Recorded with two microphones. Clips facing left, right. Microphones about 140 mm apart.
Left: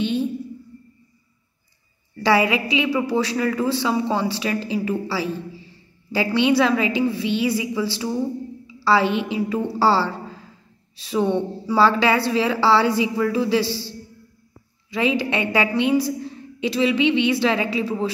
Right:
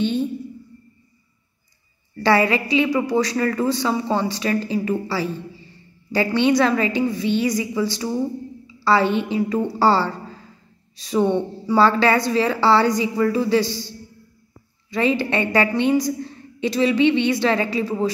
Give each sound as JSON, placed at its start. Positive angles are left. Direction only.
{"t": 0.0, "sound": "a sound", "side_deg": 5}
{"t": 2.1, "sound": "a woman's voice", "side_deg": 5}
{"t": 14.9, "sound": "a woman's voice", "side_deg": 5}